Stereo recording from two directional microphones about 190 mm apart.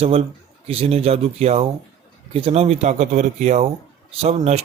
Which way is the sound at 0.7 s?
30° right (ahead or behind).